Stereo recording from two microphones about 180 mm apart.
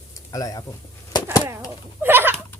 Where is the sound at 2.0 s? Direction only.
10° right (ahead or behind).